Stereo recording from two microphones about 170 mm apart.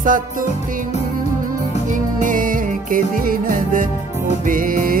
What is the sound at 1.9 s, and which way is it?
Music, 50° right (ahead or behind).